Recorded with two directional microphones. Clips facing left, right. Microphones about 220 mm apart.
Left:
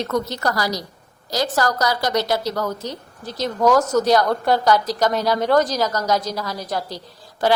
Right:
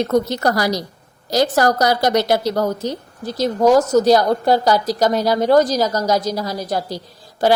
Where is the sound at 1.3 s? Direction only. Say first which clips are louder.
Right 5 dB; 60° right (ahead or behind).